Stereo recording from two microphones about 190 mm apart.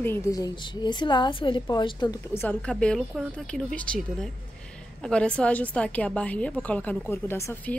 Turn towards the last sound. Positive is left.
turn(degrees=15)  # may be behind; listen again after turning